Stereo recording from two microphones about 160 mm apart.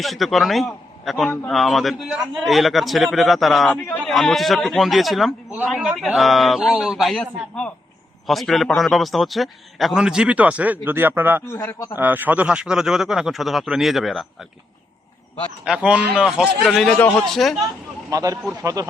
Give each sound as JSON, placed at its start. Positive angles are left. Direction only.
{"t": 0.0, "sound": "a man's voice", "side_deg": 0}
{"t": 11.4, "sound": "a man's voice", "side_deg": 20}
{"t": 11.9, "sound": "a man's voice", "side_deg": -10}
{"t": 15.6, "sound": "a man's voice", "side_deg": -5}
{"t": 18.1, "sound": "speech", "side_deg": -20}